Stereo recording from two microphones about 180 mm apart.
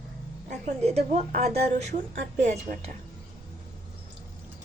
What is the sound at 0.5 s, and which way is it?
A woman's voice, 40° right (ahead or behind).